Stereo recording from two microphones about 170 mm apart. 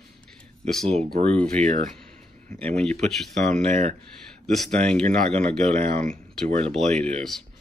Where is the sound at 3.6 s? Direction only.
40° right (ahead or behind).